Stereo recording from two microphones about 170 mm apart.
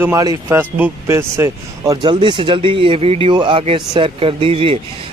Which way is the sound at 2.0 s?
25° right (ahead or behind).